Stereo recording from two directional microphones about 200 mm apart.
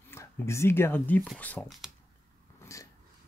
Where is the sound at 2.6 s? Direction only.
15° left (ahead or behind).